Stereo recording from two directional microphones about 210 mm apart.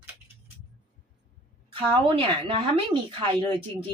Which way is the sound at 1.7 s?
25° right (ahead or behind).